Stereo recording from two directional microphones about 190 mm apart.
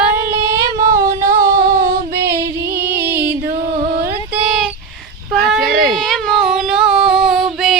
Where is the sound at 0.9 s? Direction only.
45° right (ahead or behind).